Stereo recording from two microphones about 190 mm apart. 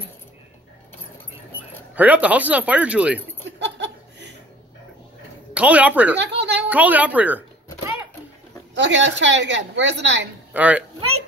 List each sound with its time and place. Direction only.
2.0 s speech: 10° right (ahead or behind)
3.5 s laughter: 65° right (ahead or behind)
5.5 s speech: 5° right (ahead or behind)
6.1 s a sound: 65° right (ahead or behind)
6.7 s speech: 10° right (ahead or behind)
8.7 s a woman's voice: 70° right (ahead or behind)
10.5 s speech: 10° right (ahead or behind)